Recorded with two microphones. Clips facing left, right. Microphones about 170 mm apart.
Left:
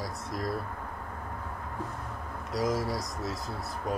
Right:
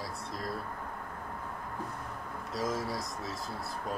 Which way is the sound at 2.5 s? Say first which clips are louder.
Left 4 dB; 15° left (ahead or behind).